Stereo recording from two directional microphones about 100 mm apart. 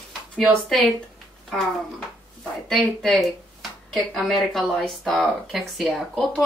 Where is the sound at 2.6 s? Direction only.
5° left (ahead or behind).